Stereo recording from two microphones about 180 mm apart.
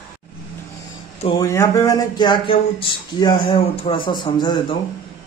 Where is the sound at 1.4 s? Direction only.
20° left (ahead or behind).